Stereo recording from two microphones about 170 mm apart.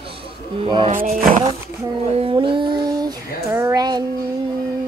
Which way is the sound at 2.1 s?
30° right (ahead or behind).